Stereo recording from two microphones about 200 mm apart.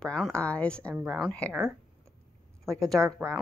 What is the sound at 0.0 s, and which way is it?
A woman's voice, 5° left (ahead or behind).